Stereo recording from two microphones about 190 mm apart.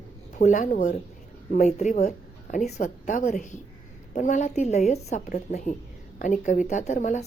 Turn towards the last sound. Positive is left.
turn(degrees=40)  # may be behind; listen again after turning